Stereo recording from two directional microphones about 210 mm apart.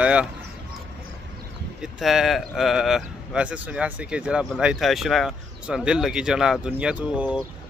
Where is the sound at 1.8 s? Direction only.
Centre (ahead or behind).